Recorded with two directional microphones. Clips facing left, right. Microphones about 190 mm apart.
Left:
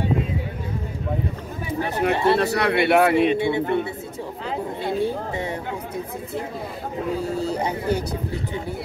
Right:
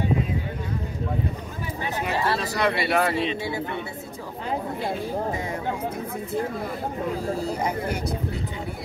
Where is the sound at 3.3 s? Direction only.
25° left (ahead or behind).